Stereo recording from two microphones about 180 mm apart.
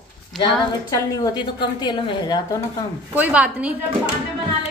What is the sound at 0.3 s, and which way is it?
Speech, centre (ahead or behind).